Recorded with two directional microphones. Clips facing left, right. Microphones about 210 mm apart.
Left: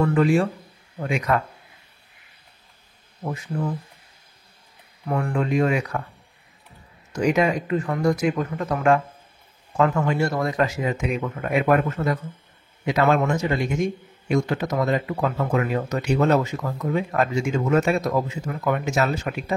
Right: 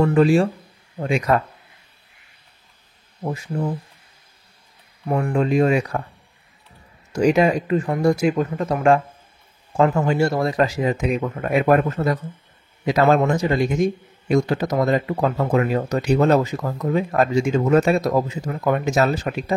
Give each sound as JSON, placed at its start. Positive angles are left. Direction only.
{"t": 0.0, "sound": "speech", "side_deg": -30}
{"t": 3.3, "sound": "speech", "side_deg": -25}
{"t": 5.0, "sound": "speech", "side_deg": -25}
{"t": 7.2, "sound": "speech", "side_deg": -30}